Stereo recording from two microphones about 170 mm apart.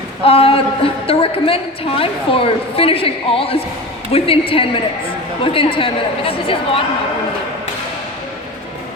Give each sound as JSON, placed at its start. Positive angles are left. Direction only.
{"t": 0.3, "sound": "a woman's voice", "side_deg": 35}